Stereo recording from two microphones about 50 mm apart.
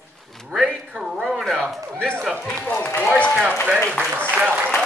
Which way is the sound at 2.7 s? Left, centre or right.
Left.